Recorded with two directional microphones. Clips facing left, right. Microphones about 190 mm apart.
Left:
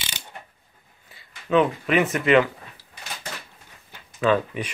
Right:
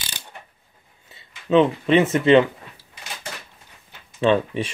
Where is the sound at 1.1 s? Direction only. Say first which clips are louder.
Right 3 dB; 25° right (ahead or behind).